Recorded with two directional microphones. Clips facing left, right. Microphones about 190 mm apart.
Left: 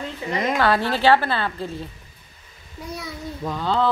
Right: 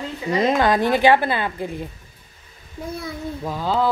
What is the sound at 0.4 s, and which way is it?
A woman's voice, 15° right (ahead or behind).